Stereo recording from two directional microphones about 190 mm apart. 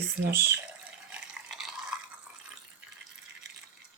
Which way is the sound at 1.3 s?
Centre (ahead or behind).